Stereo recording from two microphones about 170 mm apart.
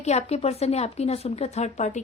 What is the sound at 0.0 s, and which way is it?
A woman's voice, 40° left (ahead or behind).